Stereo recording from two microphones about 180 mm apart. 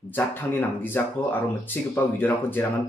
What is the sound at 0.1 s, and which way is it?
Speech, 10° left (ahead or behind).